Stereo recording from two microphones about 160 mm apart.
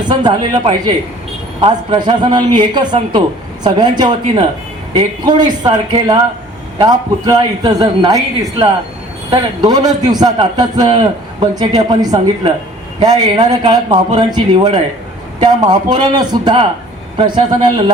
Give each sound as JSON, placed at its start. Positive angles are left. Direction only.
{"t": 0.1, "sound": "a man's voice", "side_deg": -30}
{"t": 9.3, "sound": "a man's voice", "side_deg": -25}